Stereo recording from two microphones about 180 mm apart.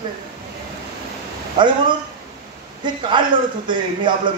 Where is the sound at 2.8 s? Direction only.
25° right (ahead or behind).